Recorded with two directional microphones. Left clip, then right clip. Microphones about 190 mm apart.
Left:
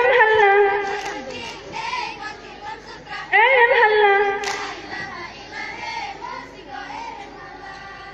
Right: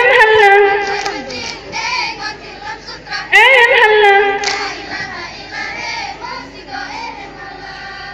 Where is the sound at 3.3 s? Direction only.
45° left (ahead or behind).